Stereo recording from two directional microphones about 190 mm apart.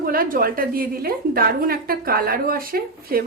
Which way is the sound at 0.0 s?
50° right (ahead or behind).